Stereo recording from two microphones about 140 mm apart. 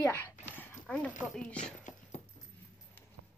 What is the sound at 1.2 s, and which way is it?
Speech, 5° left (ahead or behind).